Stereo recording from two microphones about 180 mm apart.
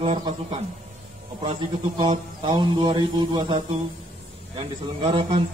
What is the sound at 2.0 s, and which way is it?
A man's voice, 25° right (ahead or behind).